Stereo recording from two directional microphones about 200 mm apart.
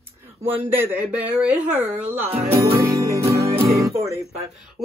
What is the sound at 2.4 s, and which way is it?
Music, 15° right (ahead or behind).